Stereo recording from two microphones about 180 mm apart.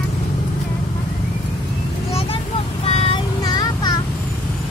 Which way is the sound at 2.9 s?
35° left (ahead or behind).